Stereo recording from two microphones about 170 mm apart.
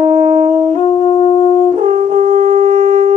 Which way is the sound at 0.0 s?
40° right (ahead or behind).